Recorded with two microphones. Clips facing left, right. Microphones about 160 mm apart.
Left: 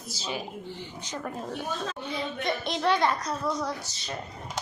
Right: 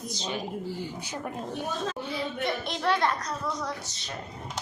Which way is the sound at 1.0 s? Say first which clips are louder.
Even; 10° right (ahead or behind).